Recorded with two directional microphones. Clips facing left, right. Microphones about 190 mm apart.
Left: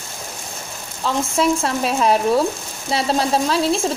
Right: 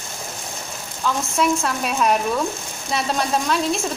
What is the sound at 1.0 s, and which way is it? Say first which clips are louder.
Speech: left 2 dB; 30° left (ahead or behind).